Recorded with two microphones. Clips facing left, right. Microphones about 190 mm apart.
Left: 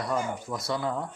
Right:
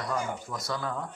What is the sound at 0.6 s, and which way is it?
Speech, 25° left (ahead or behind).